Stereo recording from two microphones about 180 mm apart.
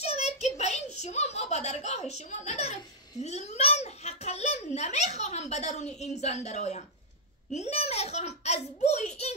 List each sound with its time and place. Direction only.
0.0 s giggle: 35° left (ahead or behind)
5.9 s a child's voice: 40° left (ahead or behind)